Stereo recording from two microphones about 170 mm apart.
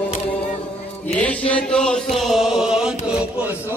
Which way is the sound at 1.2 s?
10° left (ahead or behind).